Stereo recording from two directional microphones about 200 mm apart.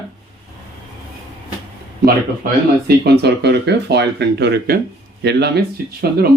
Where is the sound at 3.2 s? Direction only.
55° right (ahead or behind).